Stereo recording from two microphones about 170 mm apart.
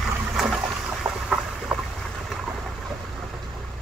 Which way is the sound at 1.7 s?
5° right (ahead or behind).